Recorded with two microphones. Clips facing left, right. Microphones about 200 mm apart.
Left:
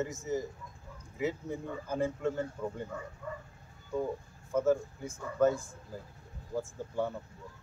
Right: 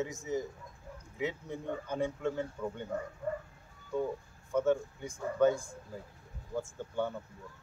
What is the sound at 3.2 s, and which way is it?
Bow-wow, 40° right (ahead or behind).